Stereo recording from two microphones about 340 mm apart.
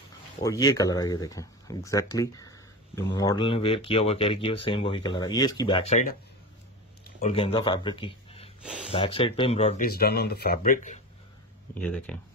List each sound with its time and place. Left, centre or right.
0.4 s speech: centre
7.2 s speech: centre
11.7 s speech: centre